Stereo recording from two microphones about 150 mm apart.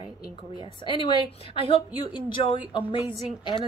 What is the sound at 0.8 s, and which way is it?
Speech, 35° left (ahead or behind).